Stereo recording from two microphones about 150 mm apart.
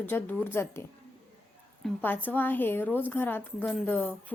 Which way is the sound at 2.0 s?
10° left (ahead or behind).